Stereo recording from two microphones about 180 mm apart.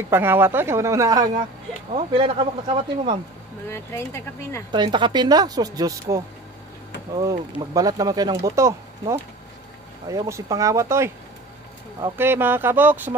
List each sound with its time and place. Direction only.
0.1 s a woman's voice: 10° right (ahead or behind)
2.0 s speech: 30° right (ahead or behind)
3.6 s speech: 15° left (ahead or behind)
4.7 s a woman's voice: 25° right (ahead or behind)
12.2 s a woman's voice: 10° right (ahead or behind)